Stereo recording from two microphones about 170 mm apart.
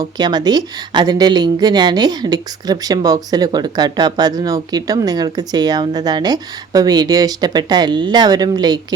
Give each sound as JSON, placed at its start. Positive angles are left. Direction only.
{"t": 0.0, "sound": "a woman's voice", "side_deg": -25}